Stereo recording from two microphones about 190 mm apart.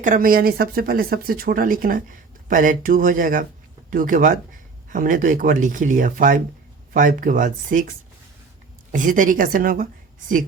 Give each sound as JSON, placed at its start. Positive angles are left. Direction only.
{"t": 0.0, "sound": "speech", "side_deg": -45}
{"t": 8.9, "sound": "speech", "side_deg": -45}